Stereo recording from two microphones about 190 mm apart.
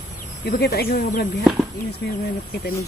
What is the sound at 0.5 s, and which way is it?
Speech, 55° left (ahead or behind).